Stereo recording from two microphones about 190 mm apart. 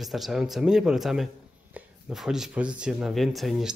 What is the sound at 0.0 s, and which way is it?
A man's voice, centre (ahead or behind).